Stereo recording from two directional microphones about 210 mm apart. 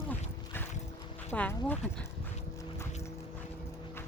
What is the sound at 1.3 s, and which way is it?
Speech, 10° left (ahead or behind).